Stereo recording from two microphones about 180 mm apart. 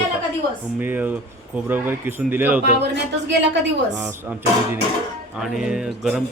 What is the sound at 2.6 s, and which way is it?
Speech, 65° right (ahead or behind).